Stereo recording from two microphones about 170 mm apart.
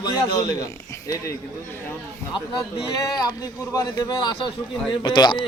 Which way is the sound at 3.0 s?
25° left (ahead or behind).